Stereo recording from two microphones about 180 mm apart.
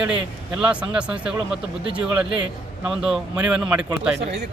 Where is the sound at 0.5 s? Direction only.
5° right (ahead or behind).